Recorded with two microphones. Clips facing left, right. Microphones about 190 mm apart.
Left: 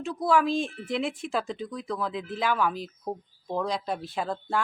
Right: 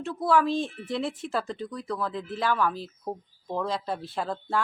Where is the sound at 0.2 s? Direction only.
15° left (ahead or behind).